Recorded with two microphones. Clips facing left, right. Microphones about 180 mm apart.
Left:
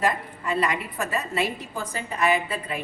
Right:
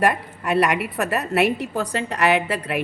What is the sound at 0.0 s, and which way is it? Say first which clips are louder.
A woman's voice: right 5 dB; 70° right (ahead or behind).